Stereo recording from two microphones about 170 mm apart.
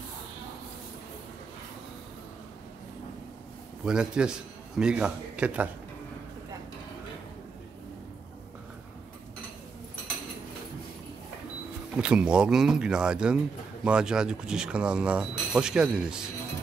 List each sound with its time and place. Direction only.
3.8 s speech: 5° right (ahead or behind)
12.0 s speech: 5° right (ahead or behind)